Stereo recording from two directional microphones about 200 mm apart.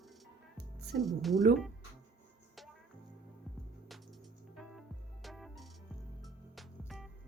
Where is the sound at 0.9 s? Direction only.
Centre (ahead or behind).